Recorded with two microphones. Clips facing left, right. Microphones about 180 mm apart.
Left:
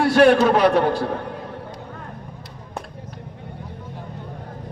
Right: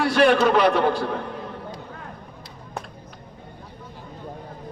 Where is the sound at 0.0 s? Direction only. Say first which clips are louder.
Left 3 dB; 45° left (ahead or behind).